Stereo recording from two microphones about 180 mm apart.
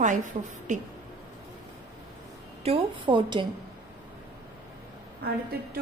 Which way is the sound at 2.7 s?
35° right (ahead or behind).